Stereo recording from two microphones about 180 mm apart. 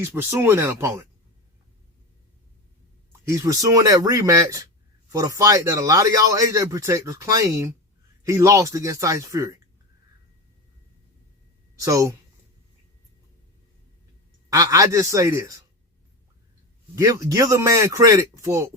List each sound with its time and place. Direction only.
0.0 s a man's voice: 15° right (ahead or behind)
3.1 s a man's voice: 15° right (ahead or behind)
11.8 s a man's voice: 15° right (ahead or behind)
14.5 s a man's voice: 20° right (ahead or behind)
16.9 s a man's voice: 15° right (ahead or behind)